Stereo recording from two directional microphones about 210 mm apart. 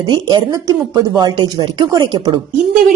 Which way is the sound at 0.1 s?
20° right (ahead or behind).